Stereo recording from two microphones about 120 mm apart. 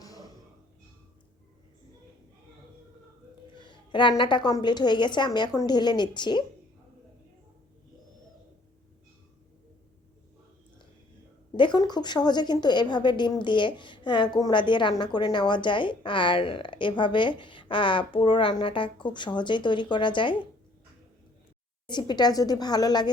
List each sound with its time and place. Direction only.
0.0 s music: 30° left (ahead or behind)
3.5 s a sound: 40° left (ahead or behind)
4.2 s speech: 40° left (ahead or behind)
11.5 s speech: 40° left (ahead or behind)
21.8 s speech: 35° left (ahead or behind)